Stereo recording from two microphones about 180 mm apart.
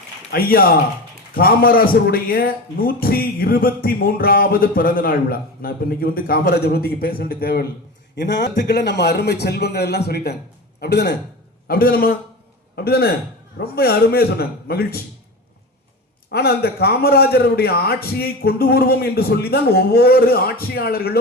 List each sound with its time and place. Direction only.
0.3 s a man's voice: 55° left (ahead or behind)
8.1 s a man's voice: 80° left
11.7 s a man's voice: 55° left (ahead or behind)
16.3 s a man's voice: 60° left (ahead or behind)